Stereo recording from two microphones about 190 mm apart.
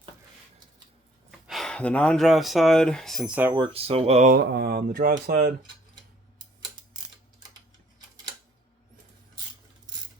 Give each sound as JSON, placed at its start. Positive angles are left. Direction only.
{"t": 1.5, "sound": "speech", "side_deg": 0}
{"t": 3.5, "sound": "speech", "side_deg": -30}
{"t": 4.3, "sound": "speech", "side_deg": -55}